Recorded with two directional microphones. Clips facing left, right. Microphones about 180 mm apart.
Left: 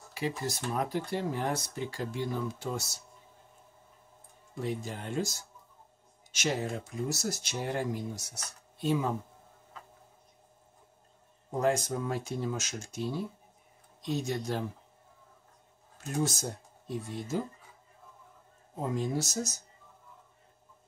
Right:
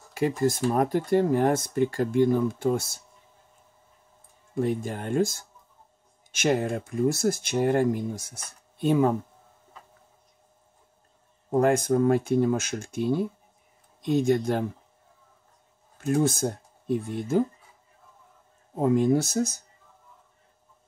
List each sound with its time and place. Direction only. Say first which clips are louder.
0.1 s speech: right 10 dB; 50° right (ahead or behind)
4.6 s speech: right 8 dB; 55° right (ahead or behind)
11.5 s speech: right 8 dB; 55° right (ahead or behind)
16.0 s speech: right 9 dB; 55° right (ahead or behind)
18.8 s speech: right 10 dB; 55° right (ahead or behind)